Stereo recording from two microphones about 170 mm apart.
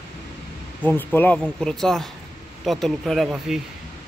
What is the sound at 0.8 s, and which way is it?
Speech, 10° left (ahead or behind).